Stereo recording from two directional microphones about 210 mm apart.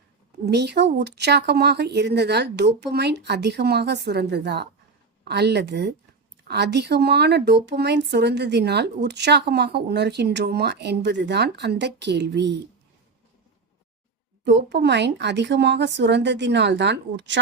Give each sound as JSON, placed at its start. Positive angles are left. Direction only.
{"t": 0.4, "sound": "speech", "side_deg": -55}
{"t": 14.4, "sound": "speech", "side_deg": -55}